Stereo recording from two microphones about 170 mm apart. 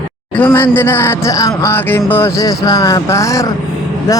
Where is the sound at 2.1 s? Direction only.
15° left (ahead or behind).